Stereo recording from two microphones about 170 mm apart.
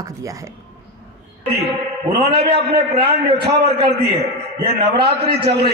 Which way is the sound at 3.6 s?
70° right (ahead or behind).